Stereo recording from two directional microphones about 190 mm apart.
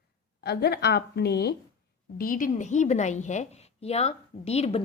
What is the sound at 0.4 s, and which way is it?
A woman's voice, 55° left (ahead or behind).